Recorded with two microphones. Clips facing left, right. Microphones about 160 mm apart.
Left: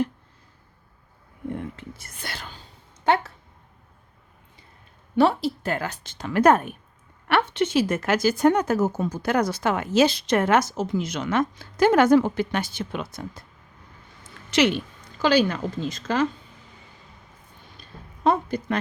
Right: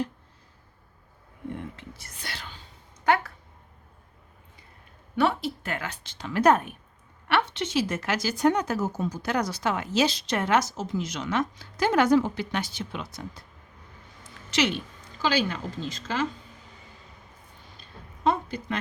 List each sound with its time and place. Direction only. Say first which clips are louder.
1.7 s speech: left 4 dB; 50° left (ahead or behind)
3.0 s a sound: left 2 dB; 25° left (ahead or behind)
5.1 s speech: left 5 dB; 35° left (ahead or behind); by 13.4 s 50° left (ahead or behind)
14.5 s a woman's voice: left 5 dB; 60° left (ahead or behind)
18.2 s a woman's voice: left 4 dB; 45° left (ahead or behind)